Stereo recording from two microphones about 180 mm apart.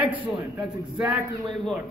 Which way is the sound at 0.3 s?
5° right (ahead or behind).